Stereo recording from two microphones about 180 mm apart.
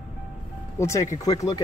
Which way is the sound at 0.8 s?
15° left (ahead or behind).